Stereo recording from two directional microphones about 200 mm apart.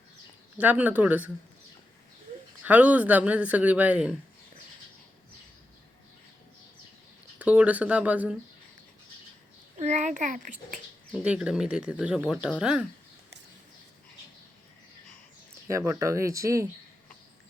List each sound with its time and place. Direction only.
0.6 s speech: 10° right (ahead or behind)
2.6 s speech: 5° right (ahead or behind)
7.3 s speech: 5° right (ahead or behind)
9.7 s a child's voice: 35° right (ahead or behind)
11.1 s speech: 5° right (ahead or behind)
15.6 s speech: 15° right (ahead or behind)